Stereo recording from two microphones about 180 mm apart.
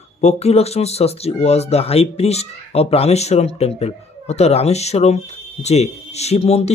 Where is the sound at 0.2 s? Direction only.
35° left (ahead or behind).